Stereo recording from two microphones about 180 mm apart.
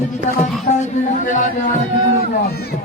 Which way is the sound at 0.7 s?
45° left (ahead or behind).